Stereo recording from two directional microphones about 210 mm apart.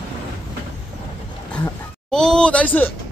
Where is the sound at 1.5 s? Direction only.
5° left (ahead or behind).